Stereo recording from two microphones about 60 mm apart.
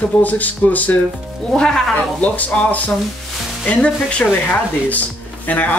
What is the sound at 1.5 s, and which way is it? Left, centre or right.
Speech, centre.